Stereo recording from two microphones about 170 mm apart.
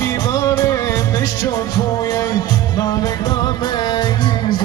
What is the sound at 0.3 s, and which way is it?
Music, 20° left (ahead or behind).